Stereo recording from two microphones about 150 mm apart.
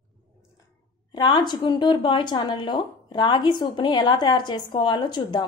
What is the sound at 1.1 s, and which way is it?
Speech, 30° left (ahead or behind).